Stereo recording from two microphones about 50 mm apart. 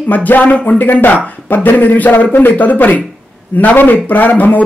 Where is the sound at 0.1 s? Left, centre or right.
Left.